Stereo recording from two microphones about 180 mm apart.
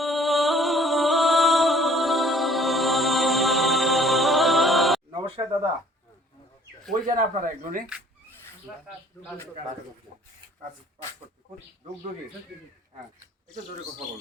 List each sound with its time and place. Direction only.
0.0 s music: centre (ahead or behind)
5.1 s a sound: 25° right (ahead or behind)
7.1 s speech: 50° right (ahead or behind)